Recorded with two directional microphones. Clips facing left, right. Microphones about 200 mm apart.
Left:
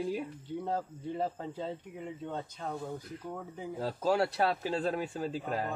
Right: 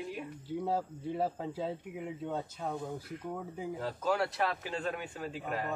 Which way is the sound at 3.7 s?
30° left (ahead or behind).